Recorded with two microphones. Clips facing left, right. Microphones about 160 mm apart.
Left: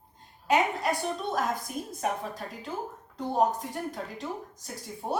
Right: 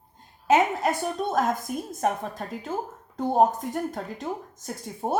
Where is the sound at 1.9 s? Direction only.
50° right (ahead or behind).